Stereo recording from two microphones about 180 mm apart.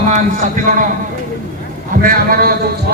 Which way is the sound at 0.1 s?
45° right (ahead or behind).